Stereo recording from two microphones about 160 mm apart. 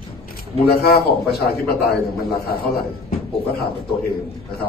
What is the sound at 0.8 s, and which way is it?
A man's voice, 75° left (ahead or behind).